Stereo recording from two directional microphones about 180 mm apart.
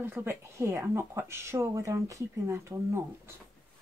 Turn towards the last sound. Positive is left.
turn(degrees=-15)  # may be behind; listen again after turning